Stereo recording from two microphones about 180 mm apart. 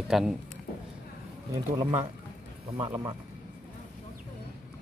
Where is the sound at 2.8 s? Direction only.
20° right (ahead or behind).